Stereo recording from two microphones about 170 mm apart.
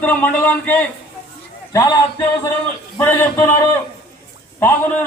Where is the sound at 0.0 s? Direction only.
10° left (ahead or behind).